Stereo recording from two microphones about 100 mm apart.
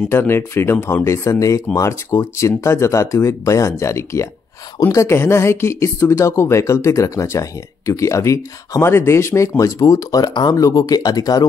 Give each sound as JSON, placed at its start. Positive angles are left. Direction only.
{"t": 0.1, "sound": "speech", "side_deg": 25}